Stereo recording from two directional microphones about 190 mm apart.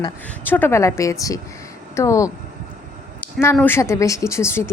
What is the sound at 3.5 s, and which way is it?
A woman's voice, 10° left (ahead or behind).